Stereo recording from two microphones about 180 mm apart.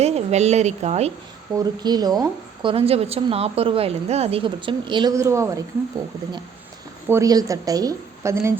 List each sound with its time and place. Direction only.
0.0 s a woman's voice: 35° right (ahead or behind)
1.5 s a woman's voice: 20° right (ahead or behind)
7.1 s a woman's voice: 20° right (ahead or behind)